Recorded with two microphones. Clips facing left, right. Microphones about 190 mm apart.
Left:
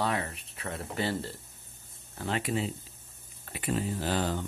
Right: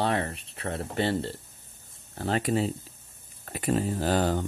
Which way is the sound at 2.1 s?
40° right (ahead or behind).